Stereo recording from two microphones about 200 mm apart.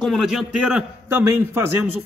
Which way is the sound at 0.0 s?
Centre (ahead or behind).